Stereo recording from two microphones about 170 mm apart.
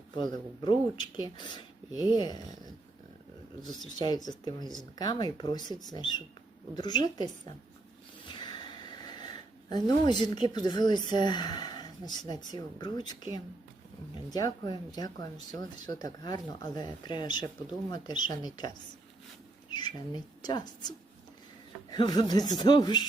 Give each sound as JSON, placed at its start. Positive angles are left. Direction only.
{"t": 0.2, "sound": "speech", "side_deg": 25}
{"t": 3.9, "sound": "speech", "side_deg": 25}
{"t": 8.3, "sound": "a sound", "side_deg": 25}
{"t": 9.7, "sound": "speech", "side_deg": 25}
{"t": 14.3, "sound": "speech", "side_deg": 20}
{"t": 19.7, "sound": "speech", "side_deg": 25}
{"t": 21.8, "sound": "speech", "side_deg": 25}